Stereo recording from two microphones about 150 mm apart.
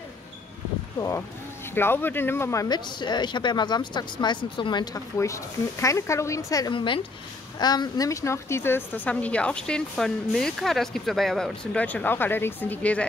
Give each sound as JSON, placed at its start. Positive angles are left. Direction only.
{"t": 0.9, "sound": "speech", "side_deg": 20}
{"t": 5.1, "sound": "a woman's voice", "side_deg": 20}